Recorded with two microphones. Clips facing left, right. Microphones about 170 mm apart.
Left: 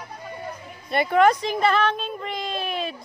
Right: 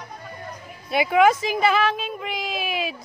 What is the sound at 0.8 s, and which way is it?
A woman's voice, 5° right (ahead or behind).